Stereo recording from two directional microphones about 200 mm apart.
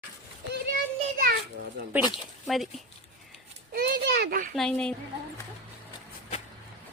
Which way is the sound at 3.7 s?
55° right (ahead or behind).